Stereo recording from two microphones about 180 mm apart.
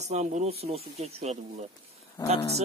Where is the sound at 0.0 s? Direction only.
40° right (ahead or behind).